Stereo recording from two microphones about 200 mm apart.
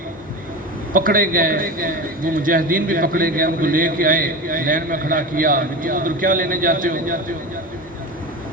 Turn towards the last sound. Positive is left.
turn(degrees=-45)  # may be behind; listen again after turning